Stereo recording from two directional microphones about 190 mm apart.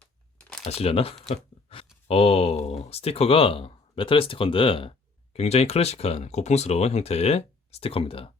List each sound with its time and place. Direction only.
0.0 s crumpling: 5° left (ahead or behind)
0.6 s speech: 30° left (ahead or behind)